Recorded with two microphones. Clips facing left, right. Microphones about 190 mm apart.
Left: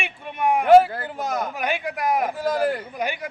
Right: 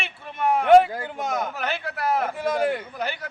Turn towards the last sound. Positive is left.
turn(degrees=15)  # may be behind; listen again after turning